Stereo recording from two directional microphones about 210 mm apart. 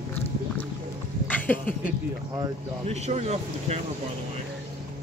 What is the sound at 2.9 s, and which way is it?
Speech, 30° right (ahead or behind).